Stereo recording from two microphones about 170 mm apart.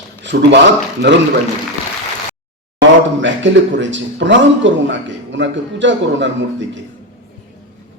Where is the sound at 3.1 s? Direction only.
90° right.